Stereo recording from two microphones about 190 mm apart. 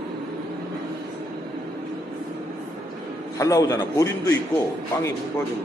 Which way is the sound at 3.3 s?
15° left (ahead or behind).